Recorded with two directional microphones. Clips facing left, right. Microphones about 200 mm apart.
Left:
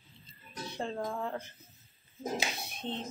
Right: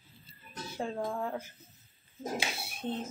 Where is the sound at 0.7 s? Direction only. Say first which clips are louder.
Right 1 dB; 5° right (ahead or behind).